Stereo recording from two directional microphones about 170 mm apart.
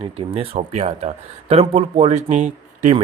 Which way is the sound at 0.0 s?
35° right (ahead or behind).